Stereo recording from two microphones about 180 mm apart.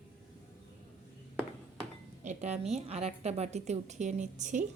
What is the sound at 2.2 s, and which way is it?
A woman's voice, 40° right (ahead or behind).